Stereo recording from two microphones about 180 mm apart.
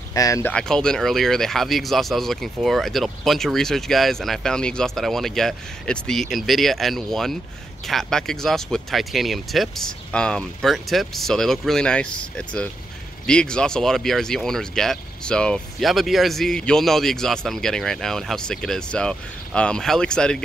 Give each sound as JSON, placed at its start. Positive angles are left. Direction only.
{"t": 0.1, "sound": "speech", "side_deg": 20}
{"t": 0.5, "sound": "speech", "side_deg": 5}